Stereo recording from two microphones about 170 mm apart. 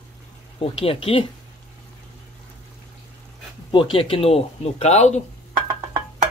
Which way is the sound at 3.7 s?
30° left (ahead or behind).